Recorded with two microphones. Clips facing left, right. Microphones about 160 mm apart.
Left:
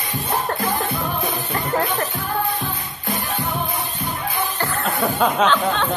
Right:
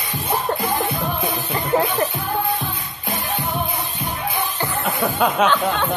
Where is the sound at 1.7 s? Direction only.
20° right (ahead or behind).